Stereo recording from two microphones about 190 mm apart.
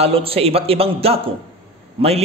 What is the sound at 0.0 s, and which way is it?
A man's voice, 30° right (ahead or behind).